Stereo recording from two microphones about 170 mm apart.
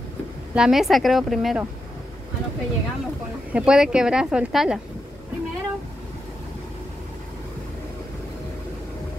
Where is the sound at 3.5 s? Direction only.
5° right (ahead or behind).